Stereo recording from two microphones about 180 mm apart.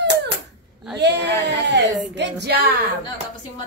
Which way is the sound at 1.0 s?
75° right (ahead or behind).